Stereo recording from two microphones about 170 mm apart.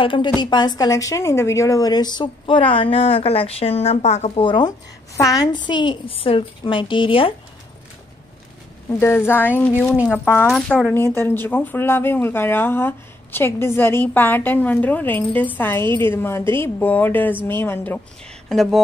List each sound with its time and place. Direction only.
0.0 s a woman's voice: 30° left (ahead or behind)
9.0 s speech: 15° left (ahead or behind)
9.8 s speech: centre (ahead or behind)
18.5 s speech: centre (ahead or behind)